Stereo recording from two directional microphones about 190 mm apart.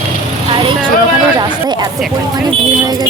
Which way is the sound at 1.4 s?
20° right (ahead or behind).